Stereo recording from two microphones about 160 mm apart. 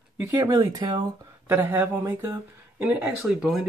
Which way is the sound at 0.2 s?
20° right (ahead or behind).